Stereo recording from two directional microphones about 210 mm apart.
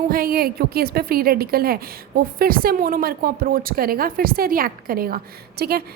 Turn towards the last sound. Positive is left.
turn(degrees=-50)  # may be behind; listen again after turning